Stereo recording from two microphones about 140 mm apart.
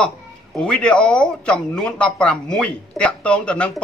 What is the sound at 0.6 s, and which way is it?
A man's voice, 10° left (ahead or behind).